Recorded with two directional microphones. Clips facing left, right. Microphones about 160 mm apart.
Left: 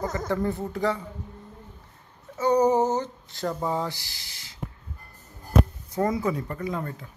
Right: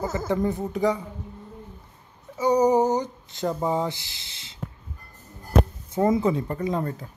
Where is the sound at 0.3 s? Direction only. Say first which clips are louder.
Right 3 dB; 15° right (ahead or behind).